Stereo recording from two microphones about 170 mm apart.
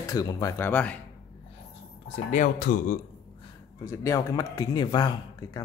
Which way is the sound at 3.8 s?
15° left (ahead or behind).